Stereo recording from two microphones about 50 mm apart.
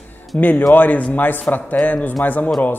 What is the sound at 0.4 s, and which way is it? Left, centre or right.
A woman's voice, left.